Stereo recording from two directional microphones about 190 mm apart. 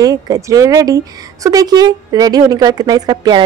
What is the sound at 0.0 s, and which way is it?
Speech, 20° right (ahead or behind).